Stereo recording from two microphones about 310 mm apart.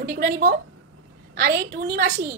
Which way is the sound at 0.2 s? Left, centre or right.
Right.